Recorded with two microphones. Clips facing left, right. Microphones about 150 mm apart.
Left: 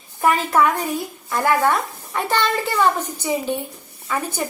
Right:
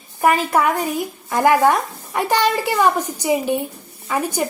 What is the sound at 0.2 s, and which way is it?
A woman's voice, 10° right (ahead or behind).